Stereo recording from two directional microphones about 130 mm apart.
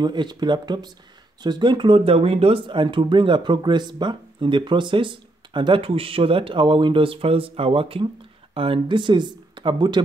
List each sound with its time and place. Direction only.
0.0 s speech: 35° right (ahead or behind)